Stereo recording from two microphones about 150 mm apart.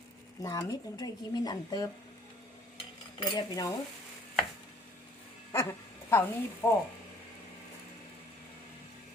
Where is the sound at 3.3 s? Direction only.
25° left (ahead or behind).